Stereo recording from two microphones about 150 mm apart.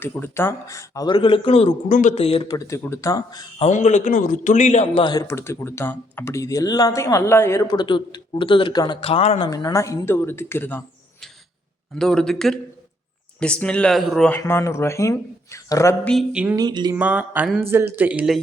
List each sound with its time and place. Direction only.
0.0 s speech: 15° left (ahead or behind); by 1.7 s 40° left (ahead or behind)
1.9 s speech: 60° left (ahead or behind)
2.1 s speech: 40° left (ahead or behind)
2.6 s speech: 20° left (ahead or behind)
3.7 s a man's voice: 55° left (ahead or behind)
5.0 s speech: 20° left (ahead or behind)
7.8 s speech: 30° left (ahead or behind)
9.4 s speech: 25° left (ahead or behind)
11.9 s speech: 5° left (ahead or behind)
14.3 s speech: 15° left (ahead or behind)
16.3 s a sound: 10° right (ahead or behind)
16.6 s speech: 30° right (ahead or behind)
16.9 s a sound: 10° right (ahead or behind)